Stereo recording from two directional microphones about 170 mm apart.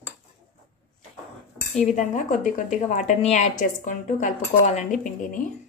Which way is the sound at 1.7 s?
45° left (ahead or behind).